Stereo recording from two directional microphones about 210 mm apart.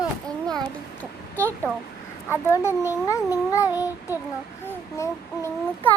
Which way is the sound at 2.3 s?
15° left (ahead or behind).